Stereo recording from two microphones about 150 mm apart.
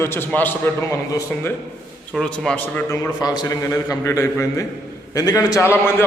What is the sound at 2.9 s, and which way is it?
A man's voice, 25° left (ahead or behind).